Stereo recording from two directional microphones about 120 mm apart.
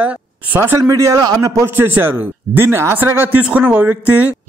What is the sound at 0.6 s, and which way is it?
A man's voice, 25° right (ahead or behind).